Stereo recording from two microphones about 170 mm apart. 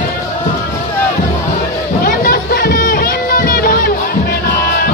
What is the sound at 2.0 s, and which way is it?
Music, 60° left (ahead or behind).